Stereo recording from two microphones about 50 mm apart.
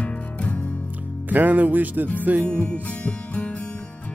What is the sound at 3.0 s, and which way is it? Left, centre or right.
Music, left.